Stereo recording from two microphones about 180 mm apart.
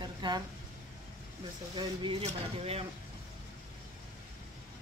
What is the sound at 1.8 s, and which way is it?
Speech, 30° right (ahead or behind).